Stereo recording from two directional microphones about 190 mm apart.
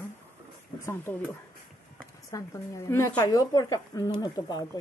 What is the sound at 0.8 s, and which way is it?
Speech, 10° left (ahead or behind).